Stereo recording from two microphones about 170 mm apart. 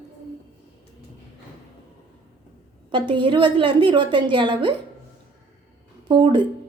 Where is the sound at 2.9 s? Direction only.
30° right (ahead or behind).